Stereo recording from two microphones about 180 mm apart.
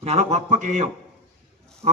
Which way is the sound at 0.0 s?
35° right (ahead or behind).